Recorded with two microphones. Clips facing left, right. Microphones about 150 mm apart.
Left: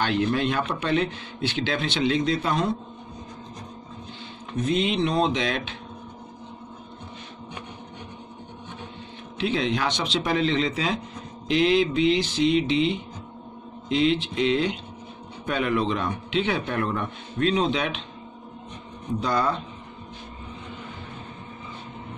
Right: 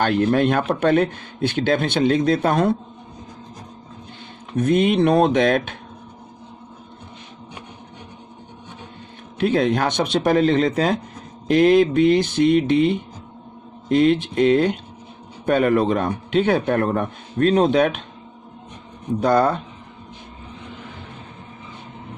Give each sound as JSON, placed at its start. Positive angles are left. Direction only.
{"t": 0.0, "sound": "a man's voice", "side_deg": -50}
{"t": 4.6, "sound": "speech", "side_deg": -55}
{"t": 9.4, "sound": "a man's voice", "side_deg": -50}
{"t": 19.1, "sound": "a man's voice", "side_deg": -50}